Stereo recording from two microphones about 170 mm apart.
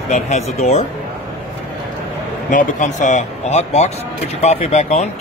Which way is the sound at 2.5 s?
50° left (ahead or behind).